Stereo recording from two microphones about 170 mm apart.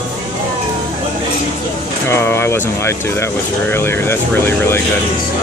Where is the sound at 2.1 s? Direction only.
15° left (ahead or behind).